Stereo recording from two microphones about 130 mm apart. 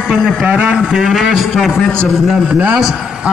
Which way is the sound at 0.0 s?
5° right (ahead or behind).